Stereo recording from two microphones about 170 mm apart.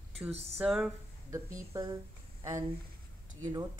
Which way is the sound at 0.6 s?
5° right (ahead or behind).